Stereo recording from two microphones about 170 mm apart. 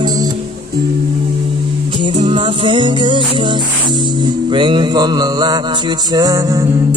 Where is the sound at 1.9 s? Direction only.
30° right (ahead or behind).